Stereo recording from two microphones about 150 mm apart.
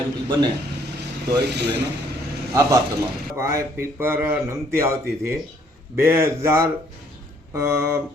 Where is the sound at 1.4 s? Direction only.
90° right.